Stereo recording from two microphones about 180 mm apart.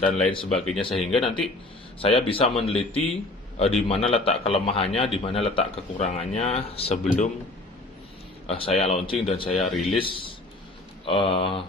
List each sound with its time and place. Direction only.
0.3 s speech: 30° left (ahead or behind)
8.5 s speech: 30° left (ahead or behind)